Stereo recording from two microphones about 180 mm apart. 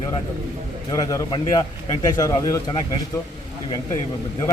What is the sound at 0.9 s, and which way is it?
A man's voice, 20° left (ahead or behind).